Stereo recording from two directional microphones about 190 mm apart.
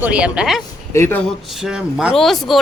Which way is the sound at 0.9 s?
15° left (ahead or behind).